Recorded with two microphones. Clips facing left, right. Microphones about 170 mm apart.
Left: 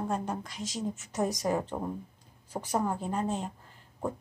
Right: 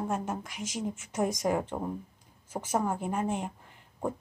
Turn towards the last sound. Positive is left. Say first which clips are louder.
# right 1 dB
turn(degrees=-15)  # may be behind; listen again after turning